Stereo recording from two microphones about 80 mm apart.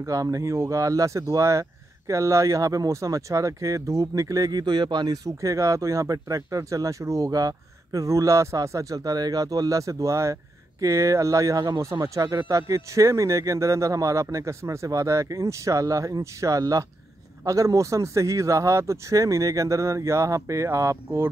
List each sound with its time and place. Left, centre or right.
0.0 s speech: right
4.5 s speech: right